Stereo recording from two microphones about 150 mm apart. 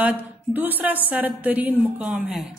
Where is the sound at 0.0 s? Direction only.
10° right (ahead or behind).